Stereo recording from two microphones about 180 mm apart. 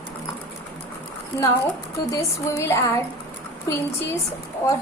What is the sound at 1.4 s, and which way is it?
A woman's voice, 15° left (ahead or behind).